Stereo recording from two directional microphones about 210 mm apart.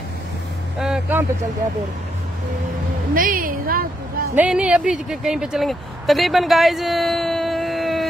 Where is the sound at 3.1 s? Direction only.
40° right (ahead or behind).